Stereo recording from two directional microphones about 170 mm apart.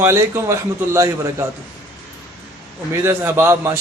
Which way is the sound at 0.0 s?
15° right (ahead or behind).